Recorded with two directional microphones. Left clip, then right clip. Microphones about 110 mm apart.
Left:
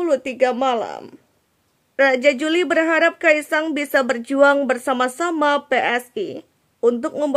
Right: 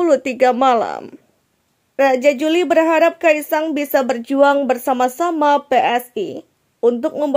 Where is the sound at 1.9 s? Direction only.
20° right (ahead or behind).